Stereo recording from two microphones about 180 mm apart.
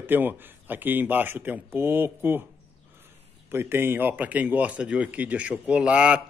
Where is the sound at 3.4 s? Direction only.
15° right (ahead or behind).